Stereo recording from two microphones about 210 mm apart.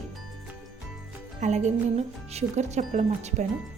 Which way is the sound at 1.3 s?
35° right (ahead or behind).